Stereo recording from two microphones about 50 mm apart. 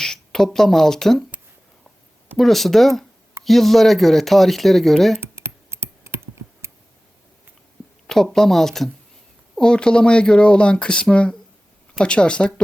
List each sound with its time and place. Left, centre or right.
0.0 s speech: centre
2.4 s speech: centre
5.2 s a sound: right
8.0 s speech: centre
9.6 s speech: centre